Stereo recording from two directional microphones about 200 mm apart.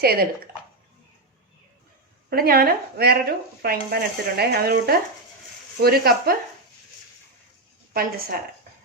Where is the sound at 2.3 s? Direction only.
50° right (ahead or behind).